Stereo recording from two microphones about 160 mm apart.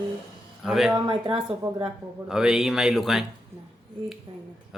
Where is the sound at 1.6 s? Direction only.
20° right (ahead or behind).